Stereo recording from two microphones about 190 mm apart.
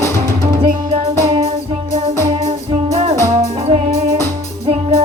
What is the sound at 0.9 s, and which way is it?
Music, 30° right (ahead or behind).